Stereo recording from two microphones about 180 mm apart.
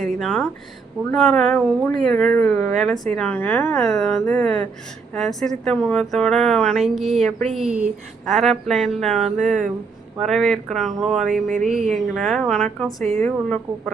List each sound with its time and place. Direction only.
0.0 s speech: 5° left (ahead or behind)
11.4 s a sound: 45° right (ahead or behind)
11.7 s speech: centre (ahead or behind)